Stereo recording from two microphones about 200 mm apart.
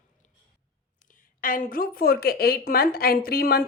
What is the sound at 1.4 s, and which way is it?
A woman's voice, 45° left (ahead or behind).